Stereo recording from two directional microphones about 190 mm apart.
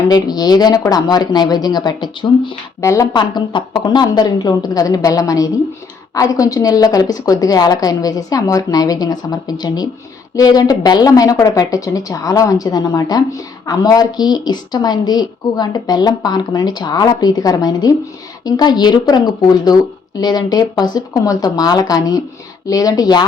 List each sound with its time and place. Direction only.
0.1 s a woman's voice: 20° left (ahead or behind)